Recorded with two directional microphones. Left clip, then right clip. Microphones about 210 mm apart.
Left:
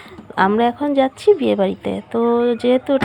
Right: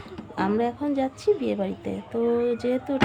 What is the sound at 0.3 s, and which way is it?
Speech, 25° left (ahead or behind).